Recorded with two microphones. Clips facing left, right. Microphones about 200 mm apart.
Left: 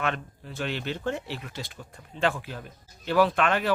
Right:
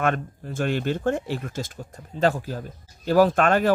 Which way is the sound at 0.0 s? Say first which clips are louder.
Right 6 dB; 45° right (ahead or behind).